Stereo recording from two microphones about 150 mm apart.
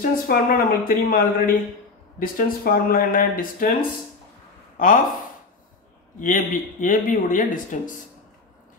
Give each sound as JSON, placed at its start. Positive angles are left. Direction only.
{"t": 0.0, "sound": "speech", "side_deg": 70}
{"t": 4.7, "sound": "speech", "side_deg": 65}
{"t": 6.1, "sound": "speech", "side_deg": 60}